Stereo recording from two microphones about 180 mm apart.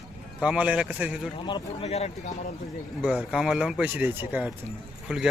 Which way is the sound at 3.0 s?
5° right (ahead or behind).